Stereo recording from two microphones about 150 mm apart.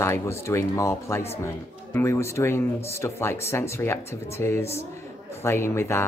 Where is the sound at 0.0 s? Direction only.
20° left (ahead or behind).